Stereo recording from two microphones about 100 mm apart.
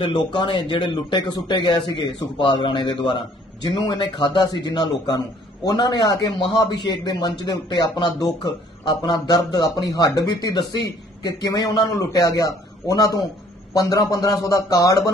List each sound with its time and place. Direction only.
0.0 s a man's voice: 50° left (ahead or behind); by 15.1 s 35° left (ahead or behind)